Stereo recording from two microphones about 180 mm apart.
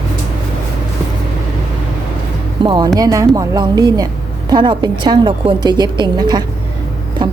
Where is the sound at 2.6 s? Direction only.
25° right (ahead or behind).